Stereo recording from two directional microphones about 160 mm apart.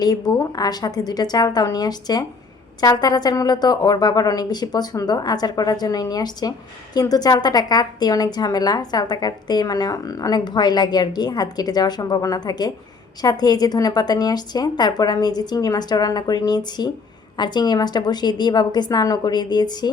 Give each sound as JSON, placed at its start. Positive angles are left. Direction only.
{"t": 0.0, "sound": "a woman's voice", "side_deg": 25}